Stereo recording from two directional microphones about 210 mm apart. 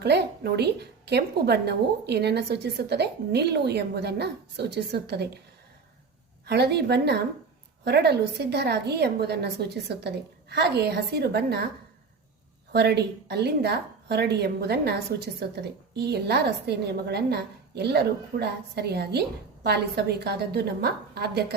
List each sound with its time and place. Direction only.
0.0 s a woman's voice: 50° right (ahead or behind)
6.4 s a woman's voice: 50° right (ahead or behind)
12.7 s a woman's voice: 50° right (ahead or behind)